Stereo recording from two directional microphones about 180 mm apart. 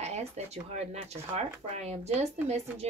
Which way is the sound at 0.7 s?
35° right (ahead or behind).